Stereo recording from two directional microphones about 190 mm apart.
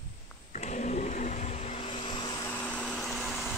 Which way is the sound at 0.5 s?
40° left (ahead or behind).